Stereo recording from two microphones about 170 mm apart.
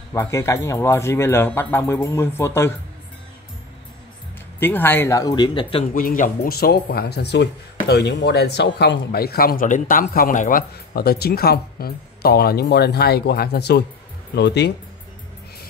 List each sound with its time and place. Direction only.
0.1 s speech: 15° left (ahead or behind)
4.6 s speech: 10° left (ahead or behind); by 5.9 s 30° left (ahead or behind)
5.9 s speech: 55° left (ahead or behind); by 13.8 s 75° left (ahead or behind)
14.3 s speech: 85° left